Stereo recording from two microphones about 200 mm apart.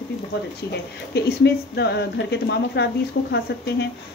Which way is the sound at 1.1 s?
55° left (ahead or behind).